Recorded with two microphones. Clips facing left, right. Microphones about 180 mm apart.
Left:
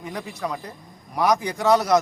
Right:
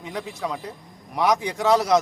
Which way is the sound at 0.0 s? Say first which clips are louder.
Even; centre (ahead or behind).